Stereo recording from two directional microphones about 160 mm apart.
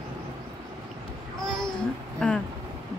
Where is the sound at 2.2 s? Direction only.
5° left (ahead or behind).